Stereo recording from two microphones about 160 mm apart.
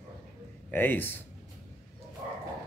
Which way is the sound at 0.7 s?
10° left (ahead or behind).